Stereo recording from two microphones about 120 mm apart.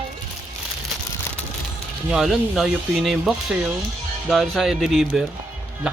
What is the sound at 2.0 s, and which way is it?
A man's voice, 5° right (ahead or behind).